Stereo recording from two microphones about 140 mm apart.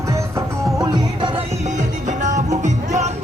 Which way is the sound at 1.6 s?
60° right (ahead or behind).